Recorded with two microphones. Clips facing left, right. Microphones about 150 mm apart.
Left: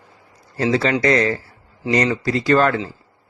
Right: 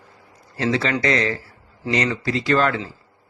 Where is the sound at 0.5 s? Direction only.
35° left (ahead or behind).